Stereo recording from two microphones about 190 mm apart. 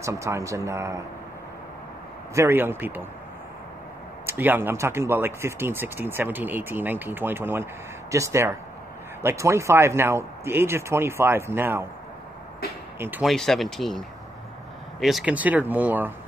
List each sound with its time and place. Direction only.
0.0 s speech: 15° right (ahead or behind)
2.3 s speech: 10° right (ahead or behind)
4.3 s speech: 10° right (ahead or behind)
13.0 s speech: 10° right (ahead or behind)
13.3 s speech: centre (ahead or behind)